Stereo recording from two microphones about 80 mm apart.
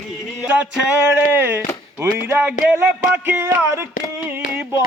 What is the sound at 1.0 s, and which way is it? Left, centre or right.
Speech, right.